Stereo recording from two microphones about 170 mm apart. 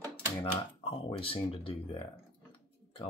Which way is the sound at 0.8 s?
30° left (ahead or behind).